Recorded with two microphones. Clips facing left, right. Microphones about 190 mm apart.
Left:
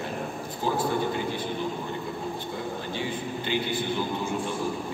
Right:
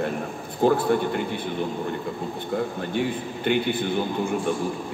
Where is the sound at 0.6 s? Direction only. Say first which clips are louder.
Right 9 dB; 60° right (ahead or behind).